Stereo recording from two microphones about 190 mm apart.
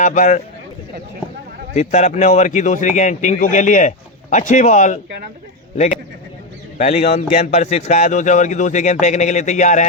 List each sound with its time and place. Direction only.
0.0 s speech: 40° left (ahead or behind)
1.7 s speech: 40° left (ahead or behind)